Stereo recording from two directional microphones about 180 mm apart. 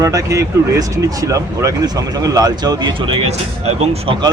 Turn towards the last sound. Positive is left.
turn(degrees=-25)  # may be behind; listen again after turning